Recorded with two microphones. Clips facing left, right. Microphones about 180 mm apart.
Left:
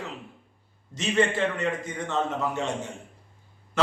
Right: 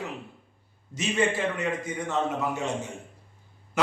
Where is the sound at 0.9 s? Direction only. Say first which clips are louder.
Left 2 dB; 10° right (ahead or behind).